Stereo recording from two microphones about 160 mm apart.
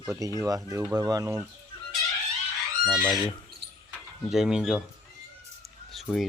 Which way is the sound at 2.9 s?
10° left (ahead or behind).